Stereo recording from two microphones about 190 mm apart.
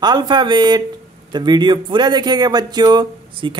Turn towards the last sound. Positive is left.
turn(degrees=-25)  # may be behind; listen again after turning